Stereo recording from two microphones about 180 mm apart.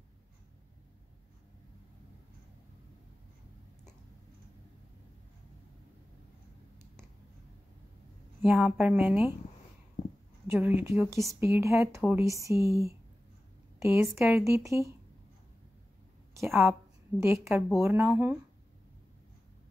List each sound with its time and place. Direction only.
8.4 s speech: 5° right (ahead or behind)
10.4 s a sound: 10° right (ahead or behind)
10.8 s speech: 15° right (ahead or behind)
16.3 s a woman's voice: 15° right (ahead or behind)